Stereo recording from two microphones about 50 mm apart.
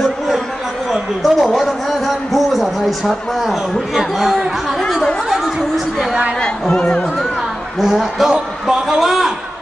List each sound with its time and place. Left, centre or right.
0.9 s a man's voice: centre
4.8 s a sound: centre
6.7 s speech: left
7.8 s a man's voice: centre